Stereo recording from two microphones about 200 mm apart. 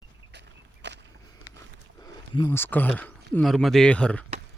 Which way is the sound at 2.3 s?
20° left (ahead or behind).